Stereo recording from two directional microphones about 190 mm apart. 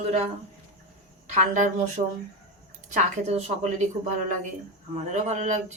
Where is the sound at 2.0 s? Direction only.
30° right (ahead or behind).